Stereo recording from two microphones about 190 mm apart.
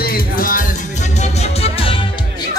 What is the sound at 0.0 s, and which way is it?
Music, 50° left (ahead or behind).